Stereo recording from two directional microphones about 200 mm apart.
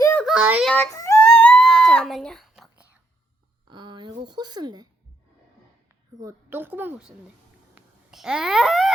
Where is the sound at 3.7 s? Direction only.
20° right (ahead or behind).